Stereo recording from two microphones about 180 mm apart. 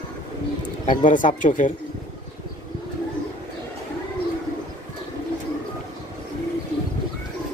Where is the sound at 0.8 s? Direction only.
45° left (ahead or behind).